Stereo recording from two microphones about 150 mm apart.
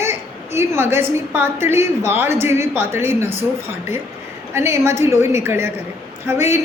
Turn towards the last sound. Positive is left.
turn(degrees=-15)  # may be behind; listen again after turning